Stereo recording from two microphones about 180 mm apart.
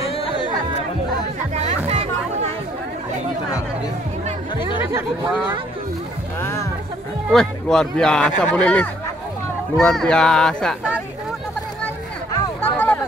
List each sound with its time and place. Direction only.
0.1 s music: 30° left (ahead or behind)
1.5 s music: 35° right (ahead or behind)
6.4 s music: 15° left (ahead or behind)
7.2 s speech: 5° left (ahead or behind)
12.6 s a sound: 10° left (ahead or behind)